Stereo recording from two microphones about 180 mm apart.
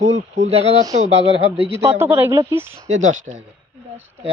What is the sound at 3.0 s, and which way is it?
Speech, 45° right (ahead or behind).